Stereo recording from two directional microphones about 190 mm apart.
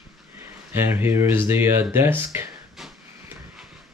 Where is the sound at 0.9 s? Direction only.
10° right (ahead or behind).